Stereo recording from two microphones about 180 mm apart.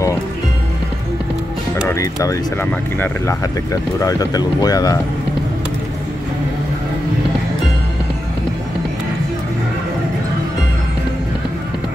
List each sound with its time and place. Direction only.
1.8 s speech: 20° left (ahead or behind)